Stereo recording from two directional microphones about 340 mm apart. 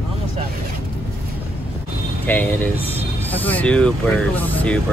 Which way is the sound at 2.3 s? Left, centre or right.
Centre.